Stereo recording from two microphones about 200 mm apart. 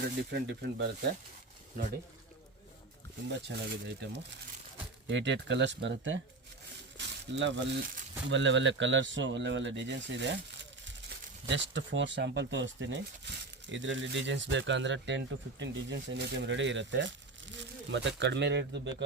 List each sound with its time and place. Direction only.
0.2 s speech: 55° right (ahead or behind)
3.3 s speech: 55° right (ahead or behind)
11.4 s speech: 65° right (ahead or behind)